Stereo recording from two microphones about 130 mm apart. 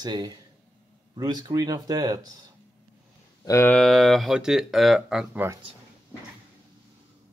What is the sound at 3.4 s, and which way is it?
Speech, 20° left (ahead or behind).